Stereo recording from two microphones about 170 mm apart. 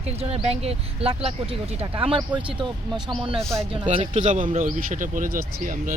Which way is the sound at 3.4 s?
5° left (ahead or behind).